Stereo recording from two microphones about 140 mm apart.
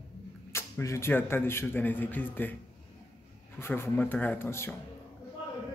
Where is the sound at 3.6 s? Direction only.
15° left (ahead or behind).